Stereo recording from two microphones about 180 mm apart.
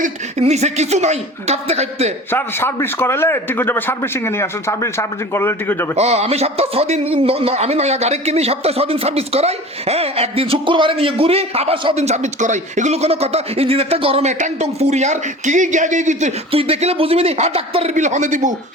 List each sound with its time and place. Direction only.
0.0 s a man's voice: 40° right (ahead or behind)
2.3 s a man's voice: 10° left (ahead or behind)
6.0 s a man's voice: 35° right (ahead or behind)